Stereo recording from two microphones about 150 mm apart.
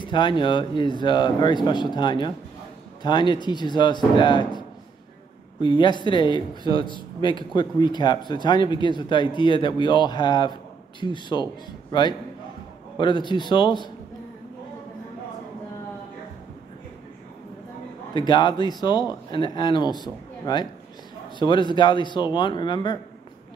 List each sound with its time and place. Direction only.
0.0 s speech: 30° left (ahead or behind)
18.1 s speech: 30° left (ahead or behind)